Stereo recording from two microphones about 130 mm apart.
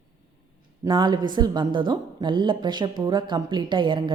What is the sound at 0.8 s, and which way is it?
A woman's voice, 35° right (ahead or behind).